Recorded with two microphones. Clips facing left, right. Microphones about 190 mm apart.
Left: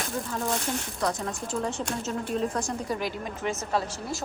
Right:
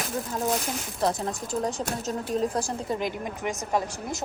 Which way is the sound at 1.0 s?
30° right (ahead or behind).